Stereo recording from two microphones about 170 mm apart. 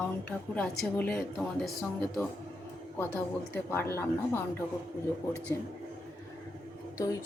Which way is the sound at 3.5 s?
15° left (ahead or behind).